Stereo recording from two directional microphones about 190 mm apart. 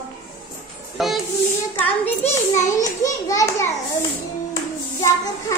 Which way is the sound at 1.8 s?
10° left (ahead or behind).